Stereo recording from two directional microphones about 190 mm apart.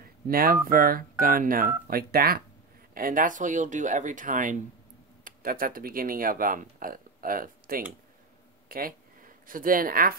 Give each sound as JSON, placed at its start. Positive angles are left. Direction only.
{"t": 0.0, "sound": "telephone dialing", "side_deg": -50}
{"t": 0.7, "sound": "speech", "side_deg": -50}